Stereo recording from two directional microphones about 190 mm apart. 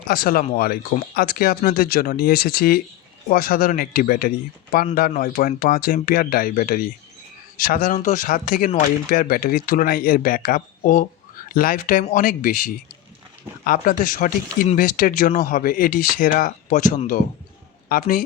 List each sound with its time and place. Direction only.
0.1 s speech: 50° left (ahead or behind)